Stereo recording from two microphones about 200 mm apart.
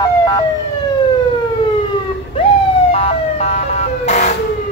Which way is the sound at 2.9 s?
30° left (ahead or behind).